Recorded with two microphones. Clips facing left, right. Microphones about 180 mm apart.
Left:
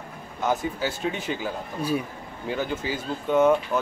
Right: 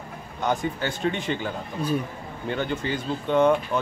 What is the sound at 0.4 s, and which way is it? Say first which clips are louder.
Speech: even; 5° left (ahead or behind).